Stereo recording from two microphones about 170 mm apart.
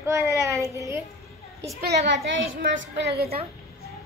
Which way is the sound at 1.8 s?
70° right (ahead or behind).